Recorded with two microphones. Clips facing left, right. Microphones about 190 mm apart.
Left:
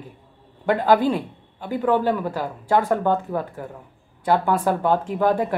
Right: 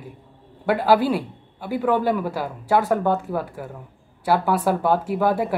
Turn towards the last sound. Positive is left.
turn(degrees=-10)  # may be behind; listen again after turning